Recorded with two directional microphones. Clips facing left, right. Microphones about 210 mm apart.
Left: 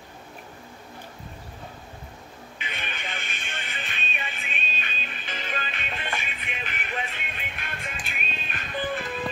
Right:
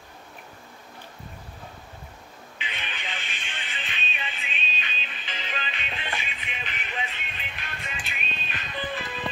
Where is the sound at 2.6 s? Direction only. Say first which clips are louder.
Left 1 dB; 50° left (ahead or behind).